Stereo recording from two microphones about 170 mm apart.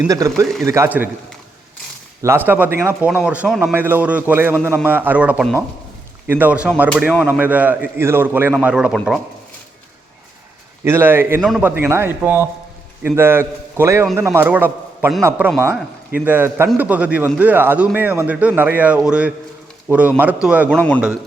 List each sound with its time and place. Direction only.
0.1 s speech: 20° right (ahead or behind)
2.2 s speech: 10° right (ahead or behind)
10.8 s speech: 10° right (ahead or behind)
11.3 s speech: centre (ahead or behind)
11.8 s a man's voice: 15° right (ahead or behind)
20.7 s a man's voice: 5° left (ahead or behind)